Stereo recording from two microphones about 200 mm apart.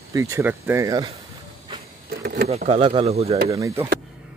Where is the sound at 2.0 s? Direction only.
50° right (ahead or behind).